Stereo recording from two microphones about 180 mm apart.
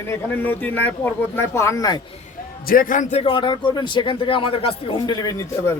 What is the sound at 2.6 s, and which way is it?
A man's voice, 50° left (ahead or behind).